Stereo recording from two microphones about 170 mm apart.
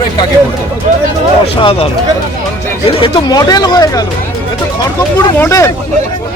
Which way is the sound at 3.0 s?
25° left (ahead or behind).